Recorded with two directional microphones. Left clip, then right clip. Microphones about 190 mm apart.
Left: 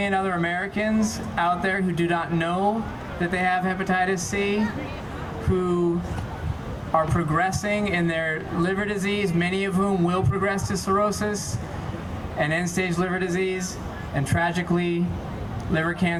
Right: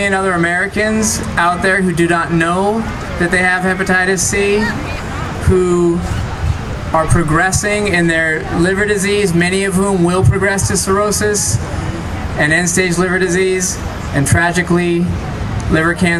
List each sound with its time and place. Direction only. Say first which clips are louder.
0.0 s speech: right 10 dB; 30° right (ahead or behind)
6.9 s speech: right 9 dB; 30° right (ahead or behind)